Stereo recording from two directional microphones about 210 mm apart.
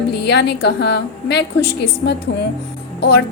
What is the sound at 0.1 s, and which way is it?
A woman's voice, 55° left (ahead or behind).